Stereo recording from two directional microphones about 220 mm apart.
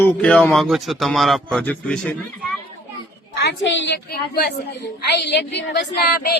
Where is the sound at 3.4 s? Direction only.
55° left (ahead or behind).